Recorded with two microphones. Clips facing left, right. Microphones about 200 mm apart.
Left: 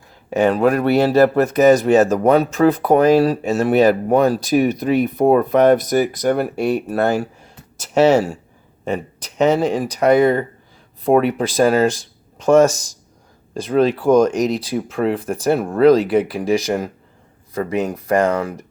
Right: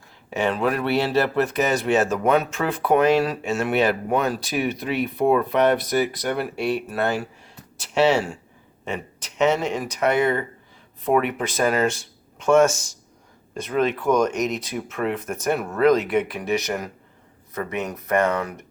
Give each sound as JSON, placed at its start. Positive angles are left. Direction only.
{"t": 0.3, "sound": "speech", "side_deg": 40}